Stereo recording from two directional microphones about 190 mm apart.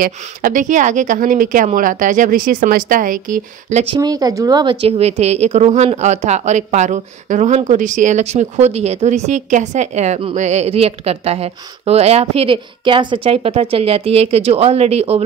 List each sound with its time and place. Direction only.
0.0 s speech: 45° right (ahead or behind)
3.9 s speech: 20° right (ahead or behind)